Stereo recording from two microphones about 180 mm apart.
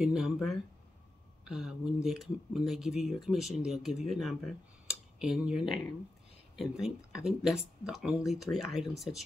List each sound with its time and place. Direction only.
0.0 s speech: centre (ahead or behind)
4.8 s a sound: 5° right (ahead or behind)
6.5 s speech: centre (ahead or behind)